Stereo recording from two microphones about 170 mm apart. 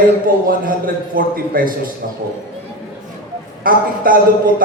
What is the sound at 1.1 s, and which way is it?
Speech, 55° right (ahead or behind).